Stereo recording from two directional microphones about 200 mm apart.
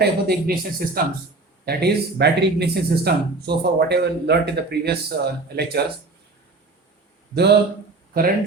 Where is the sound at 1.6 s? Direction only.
55° right (ahead or behind).